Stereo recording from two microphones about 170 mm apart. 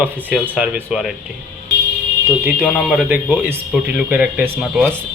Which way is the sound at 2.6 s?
Centre (ahead or behind).